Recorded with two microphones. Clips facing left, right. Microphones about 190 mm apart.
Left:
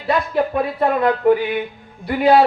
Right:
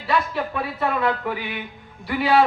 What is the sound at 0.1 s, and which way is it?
A woman's voice, 40° left (ahead or behind).